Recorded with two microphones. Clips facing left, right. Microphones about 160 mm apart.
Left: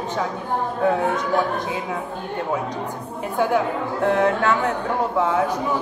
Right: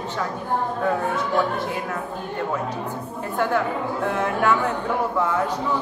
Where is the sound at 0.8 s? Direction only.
20° left (ahead or behind).